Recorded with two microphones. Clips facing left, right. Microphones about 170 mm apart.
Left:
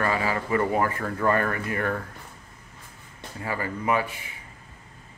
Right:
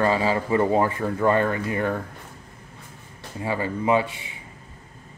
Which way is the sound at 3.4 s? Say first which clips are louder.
Right 4 dB; 20° right (ahead or behind).